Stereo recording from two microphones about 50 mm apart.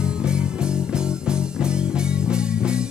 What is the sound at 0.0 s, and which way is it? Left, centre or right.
Music, centre.